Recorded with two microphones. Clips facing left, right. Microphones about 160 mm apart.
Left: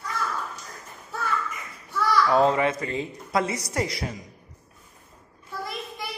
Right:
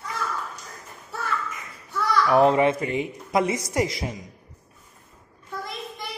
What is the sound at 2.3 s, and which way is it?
A woman's voice, 20° right (ahead or behind).